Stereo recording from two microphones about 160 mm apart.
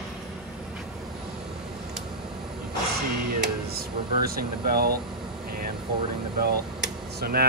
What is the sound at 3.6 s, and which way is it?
Speech, 70° right (ahead or behind).